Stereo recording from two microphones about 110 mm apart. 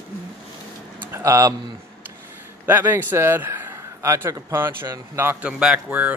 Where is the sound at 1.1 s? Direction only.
25° right (ahead or behind).